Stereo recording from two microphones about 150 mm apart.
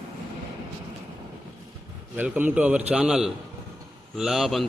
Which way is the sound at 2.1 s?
10° right (ahead or behind).